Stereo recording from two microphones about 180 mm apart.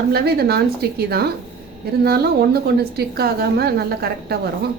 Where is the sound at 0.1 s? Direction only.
60° right (ahead or behind).